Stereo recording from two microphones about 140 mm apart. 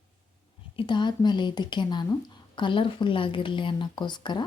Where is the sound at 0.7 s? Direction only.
35° left (ahead or behind).